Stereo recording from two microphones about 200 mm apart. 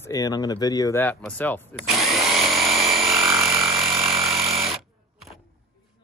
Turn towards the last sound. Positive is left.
turn(degrees=0)  # may be behind; listen again after turning